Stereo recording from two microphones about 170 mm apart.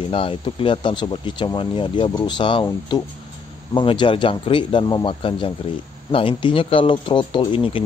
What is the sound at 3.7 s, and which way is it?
Speech, 30° left (ahead or behind).